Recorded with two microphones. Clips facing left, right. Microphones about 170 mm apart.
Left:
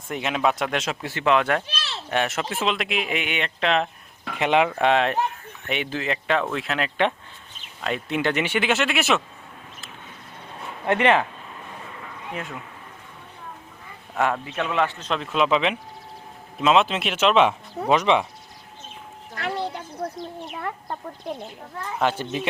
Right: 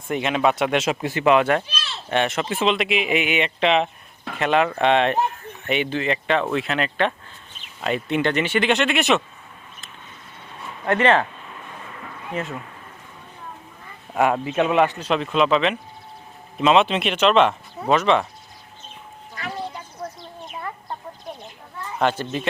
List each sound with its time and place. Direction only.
0.1 s a man's voice: centre (ahead or behind)
1.6 s a sound: 70° left (ahead or behind)
2.0 s speech: 5° left (ahead or behind)
4.4 s speech: 15° left (ahead or behind)
4.7 s speech: 5° left (ahead or behind)
10.8 s speech: 15° left (ahead or behind)
14.2 s a man's voice: 15° right (ahead or behind)
15.2 s speech: 5° left (ahead or behind)
19.3 s a sound: 65° left (ahead or behind)
20.4 s chicken: 65° left (ahead or behind)
21.9 s speech: 10° left (ahead or behind)